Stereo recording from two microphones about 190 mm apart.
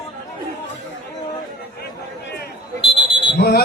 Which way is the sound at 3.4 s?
55° left (ahead or behind).